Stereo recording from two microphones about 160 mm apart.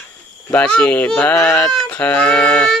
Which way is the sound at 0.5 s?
5° left (ahead or behind).